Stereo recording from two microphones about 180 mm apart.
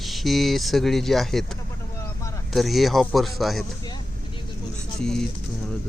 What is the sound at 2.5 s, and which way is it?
Speech, centre (ahead or behind).